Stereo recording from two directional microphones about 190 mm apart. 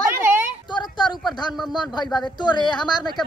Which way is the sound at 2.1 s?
20° left (ahead or behind).